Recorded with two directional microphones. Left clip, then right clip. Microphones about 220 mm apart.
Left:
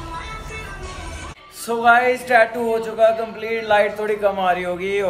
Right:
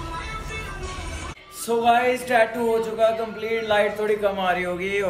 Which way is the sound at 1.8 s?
5° right (ahead or behind).